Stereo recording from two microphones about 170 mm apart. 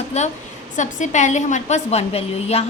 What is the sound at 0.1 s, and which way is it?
A woman's voice, 40° left (ahead or behind).